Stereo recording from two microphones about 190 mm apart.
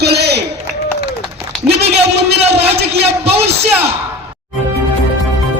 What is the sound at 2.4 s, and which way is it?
Speech, 30° right (ahead or behind).